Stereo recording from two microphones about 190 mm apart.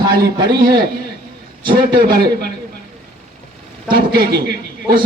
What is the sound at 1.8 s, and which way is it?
Speech, 55° right (ahead or behind).